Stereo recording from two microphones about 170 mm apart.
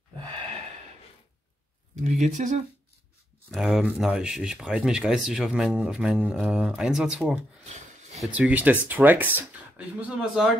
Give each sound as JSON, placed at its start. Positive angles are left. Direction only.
{"t": 2.0, "sound": "speech", "side_deg": -45}
{"t": 3.5, "sound": "speech", "side_deg": -5}